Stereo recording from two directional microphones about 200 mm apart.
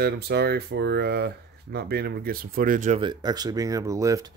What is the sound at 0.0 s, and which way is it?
Speech, 55° right (ahead or behind).